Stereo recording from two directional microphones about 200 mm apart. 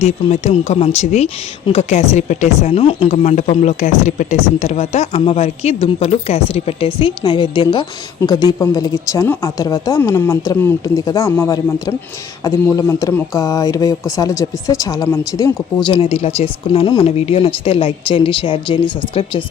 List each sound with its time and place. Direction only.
0.0 s speech: 35° left (ahead or behind)